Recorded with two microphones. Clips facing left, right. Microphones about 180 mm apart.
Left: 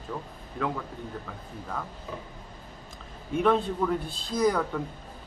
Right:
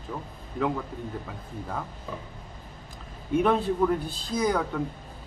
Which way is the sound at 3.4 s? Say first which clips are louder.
Right 1 dB; 5° right (ahead or behind).